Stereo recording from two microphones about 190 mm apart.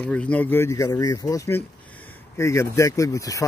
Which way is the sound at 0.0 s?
5° left (ahead or behind).